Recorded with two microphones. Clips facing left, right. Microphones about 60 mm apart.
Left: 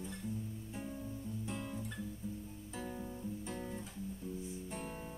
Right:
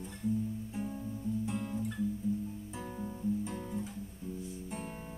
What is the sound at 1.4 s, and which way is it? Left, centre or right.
Guitar, centre.